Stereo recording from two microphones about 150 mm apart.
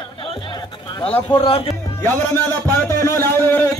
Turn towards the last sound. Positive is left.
turn(degrees=15)  # may be behind; listen again after turning